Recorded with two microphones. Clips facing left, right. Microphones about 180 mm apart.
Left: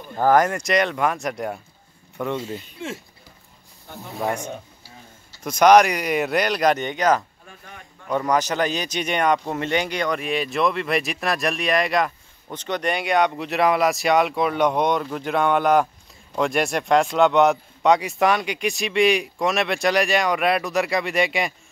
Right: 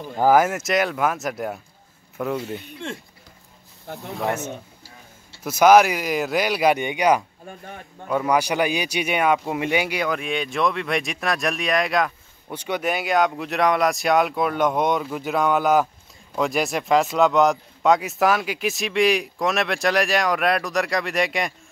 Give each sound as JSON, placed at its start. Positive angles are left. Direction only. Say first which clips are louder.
{"t": 0.2, "sound": "speech", "louder": "right 1 dB", "side_deg": -5}
{"t": 4.1, "sound": "speech", "louder": "even", "side_deg": 0}
{"t": 7.4, "sound": "speech", "louder": "right 6 dB", "side_deg": -35}
{"t": 8.1, "sound": "speech", "louder": "right 1 dB", "side_deg": -10}